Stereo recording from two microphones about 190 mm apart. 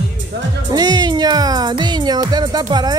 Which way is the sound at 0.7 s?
20° right (ahead or behind).